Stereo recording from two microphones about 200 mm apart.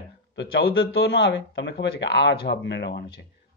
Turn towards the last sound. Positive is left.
turn(degrees=60)  # may be behind; listen again after turning